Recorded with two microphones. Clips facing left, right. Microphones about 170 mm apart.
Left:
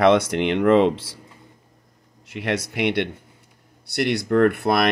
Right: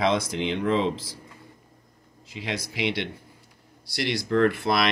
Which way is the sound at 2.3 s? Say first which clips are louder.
Left 7 dB; 65° left (ahead or behind).